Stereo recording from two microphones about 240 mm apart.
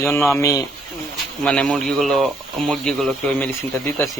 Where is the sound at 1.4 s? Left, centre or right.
Centre.